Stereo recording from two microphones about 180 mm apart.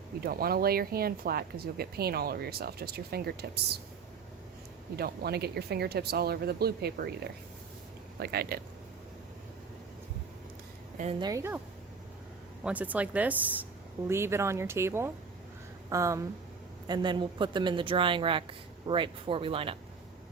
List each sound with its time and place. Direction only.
0.2 s speech: 55° right (ahead or behind)
4.9 s speech: 60° right (ahead or behind)
8.2 s speech: 60° right (ahead or behind)
11.2 s speech: 20° right (ahead or behind)
12.6 s speech: 10° right (ahead or behind); by 19.7 s 30° right (ahead or behind)